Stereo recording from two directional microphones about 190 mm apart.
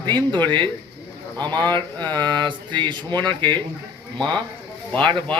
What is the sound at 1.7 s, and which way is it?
Speech, 25° right (ahead or behind).